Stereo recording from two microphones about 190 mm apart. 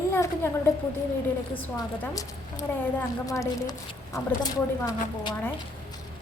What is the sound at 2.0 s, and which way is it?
A woman's voice, 15° left (ahead or behind).